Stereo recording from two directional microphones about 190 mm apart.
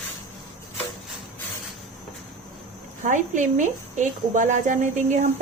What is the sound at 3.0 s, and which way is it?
Speech, 40° right (ahead or behind).